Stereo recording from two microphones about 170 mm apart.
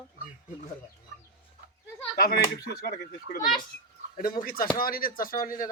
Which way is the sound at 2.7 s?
70° left (ahead or behind).